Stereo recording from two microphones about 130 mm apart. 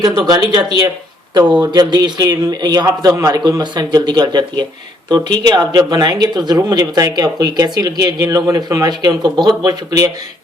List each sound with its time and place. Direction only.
0.0 s speech: 30° right (ahead or behind)